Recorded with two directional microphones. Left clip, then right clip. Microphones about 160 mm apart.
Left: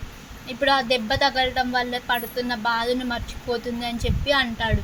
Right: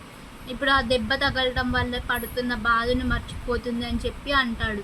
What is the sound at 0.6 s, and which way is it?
A woman's voice, 40° left (ahead or behind).